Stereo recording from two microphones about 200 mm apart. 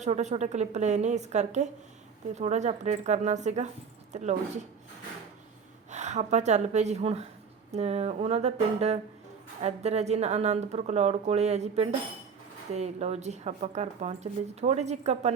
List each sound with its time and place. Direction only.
0.0 s a woman's voice: 35° right (ahead or behind)
5.9 s a woman's voice: 35° right (ahead or behind)